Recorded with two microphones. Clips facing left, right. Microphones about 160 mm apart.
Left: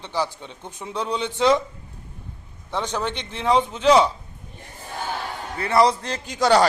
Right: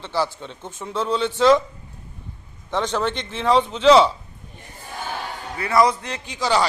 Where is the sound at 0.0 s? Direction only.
15° left (ahead or behind).